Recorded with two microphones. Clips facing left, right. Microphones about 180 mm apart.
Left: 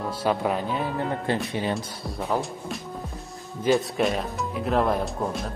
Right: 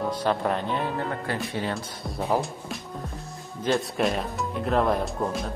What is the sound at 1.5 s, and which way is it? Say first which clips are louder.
Speech: left 2 dB; 20° left (ahead or behind).